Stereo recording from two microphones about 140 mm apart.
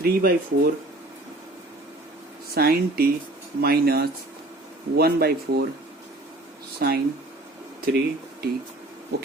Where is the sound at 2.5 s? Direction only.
90° right.